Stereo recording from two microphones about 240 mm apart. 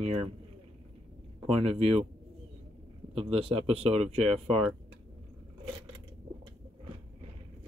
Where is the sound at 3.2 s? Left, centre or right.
Right.